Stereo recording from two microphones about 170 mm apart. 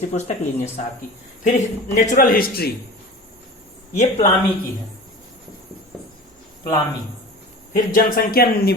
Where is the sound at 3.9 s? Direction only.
45° left (ahead or behind).